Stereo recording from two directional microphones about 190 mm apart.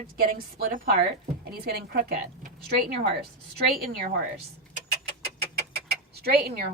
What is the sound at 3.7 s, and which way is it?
Speech, 50° right (ahead or behind).